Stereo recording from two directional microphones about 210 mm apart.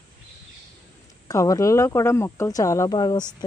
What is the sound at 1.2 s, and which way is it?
Speech, 15° left (ahead or behind).